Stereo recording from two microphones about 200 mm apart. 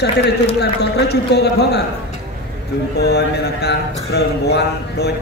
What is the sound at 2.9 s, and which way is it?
Speech, 55° left (ahead or behind).